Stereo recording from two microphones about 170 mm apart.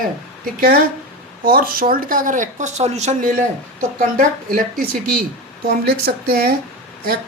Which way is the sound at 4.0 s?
55° right (ahead or behind).